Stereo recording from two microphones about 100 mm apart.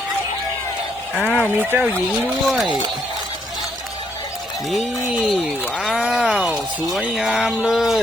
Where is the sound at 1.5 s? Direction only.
20° right (ahead or behind).